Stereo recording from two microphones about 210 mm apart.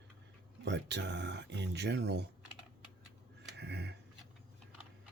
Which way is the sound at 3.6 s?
50° right (ahead or behind).